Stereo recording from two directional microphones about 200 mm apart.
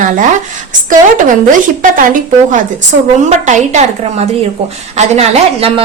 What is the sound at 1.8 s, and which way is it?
A woman's voice, 40° right (ahead or behind).